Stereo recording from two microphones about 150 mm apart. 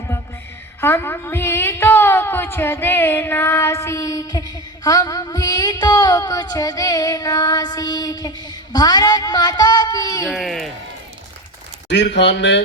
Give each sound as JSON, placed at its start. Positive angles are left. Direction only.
{"t": 0.8, "sound": "a woman's voice", "side_deg": 15}
{"t": 10.2, "sound": "speech", "side_deg": 0}